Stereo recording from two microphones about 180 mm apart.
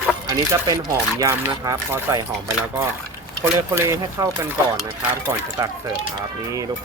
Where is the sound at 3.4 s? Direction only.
15° right (ahead or behind).